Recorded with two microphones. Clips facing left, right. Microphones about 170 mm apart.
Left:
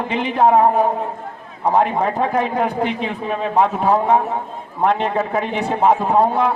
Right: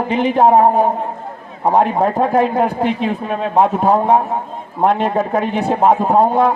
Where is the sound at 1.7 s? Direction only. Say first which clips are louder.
Right 3 dB; 35° right (ahead or behind).